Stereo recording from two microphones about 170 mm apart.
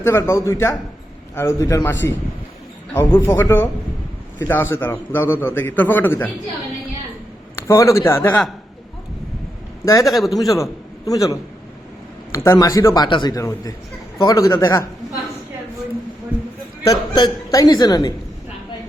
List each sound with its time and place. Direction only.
0.0 s a man's voice: 15° left (ahead or behind)
7.5 s speech: 15° left (ahead or behind)
9.8 s a man's voice: 20° left (ahead or behind)
10.1 s a man's voice: centre (ahead or behind)
10.4 s a man's voice: 20° left (ahead or behind)
16.8 s speech: 25° left (ahead or behind)